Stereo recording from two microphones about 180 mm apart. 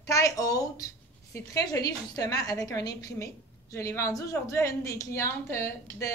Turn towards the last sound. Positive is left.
turn(degrees=15)  # may be behind; listen again after turning